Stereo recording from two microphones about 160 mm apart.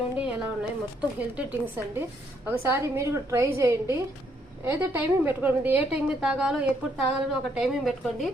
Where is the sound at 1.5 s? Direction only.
10° right (ahead or behind).